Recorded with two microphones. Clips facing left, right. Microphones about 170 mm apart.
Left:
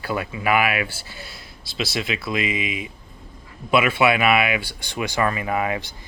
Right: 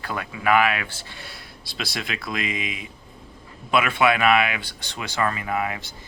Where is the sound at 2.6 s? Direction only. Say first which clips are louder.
Left 4 dB; 40° right (ahead or behind).